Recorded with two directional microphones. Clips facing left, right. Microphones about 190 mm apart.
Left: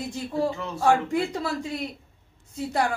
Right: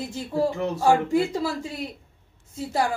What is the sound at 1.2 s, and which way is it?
Speech, 25° right (ahead or behind).